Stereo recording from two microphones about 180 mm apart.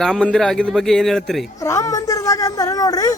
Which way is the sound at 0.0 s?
5° left (ahead or behind).